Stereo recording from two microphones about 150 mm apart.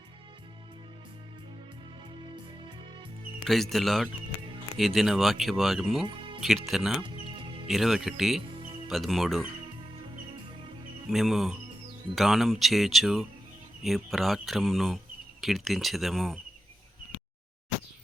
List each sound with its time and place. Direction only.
3.4 s speech: centre (ahead or behind)
6.1 s music: 35° right (ahead or behind)
6.4 s speech: centre (ahead or behind)
7.0 s music: 35° right (ahead or behind)
7.7 s speech: centre (ahead or behind)
11.1 s speech: centre (ahead or behind)